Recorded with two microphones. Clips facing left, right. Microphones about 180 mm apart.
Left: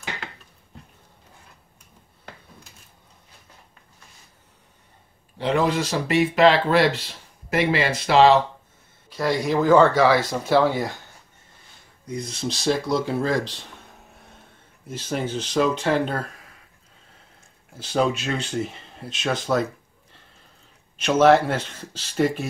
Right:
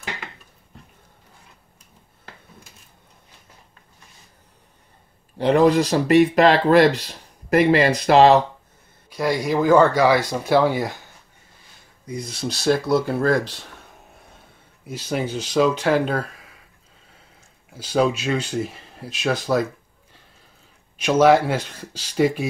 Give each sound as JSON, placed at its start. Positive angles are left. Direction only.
{"t": 5.4, "sound": "speech", "side_deg": -40}
{"t": 9.1, "sound": "speech", "side_deg": -10}
{"t": 12.1, "sound": "speech", "side_deg": -10}
{"t": 15.0, "sound": "speech", "side_deg": -5}
{"t": 17.7, "sound": "speech", "side_deg": -5}
{"t": 21.0, "sound": "speech", "side_deg": -10}